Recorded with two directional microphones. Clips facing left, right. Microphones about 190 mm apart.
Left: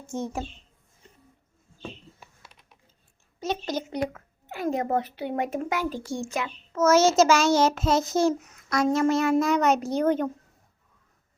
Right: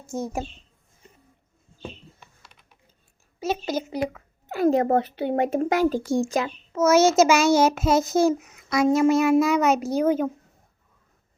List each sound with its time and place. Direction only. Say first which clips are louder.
0.1 s a child's voice: right 2 dB; 10° right (ahead or behind)
3.4 s speech: right 3 dB; 5° right (ahead or behind)
4.4 s speech: right 7 dB; 35° right (ahead or behind)
6.7 s a child's voice: right 2 dB; 10° right (ahead or behind)